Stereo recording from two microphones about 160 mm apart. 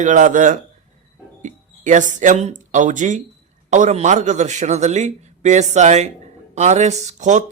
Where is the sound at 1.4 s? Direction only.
50° right (ahead or behind).